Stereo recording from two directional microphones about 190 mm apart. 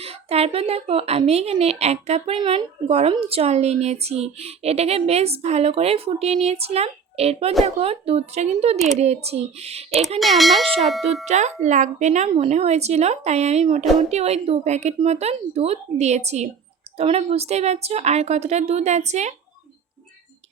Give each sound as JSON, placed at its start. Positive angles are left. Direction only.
{"t": 0.0, "sound": "a woman's voice", "side_deg": -30}
{"t": 10.2, "sound": "speech", "side_deg": 0}
{"t": 11.3, "sound": "a woman's voice", "side_deg": -35}